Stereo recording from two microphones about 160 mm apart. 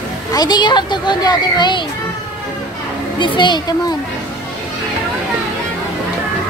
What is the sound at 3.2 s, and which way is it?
Speech, 30° left (ahead or behind).